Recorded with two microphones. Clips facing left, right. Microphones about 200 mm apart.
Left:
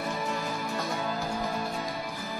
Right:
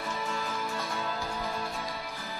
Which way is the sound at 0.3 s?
45° left (ahead or behind).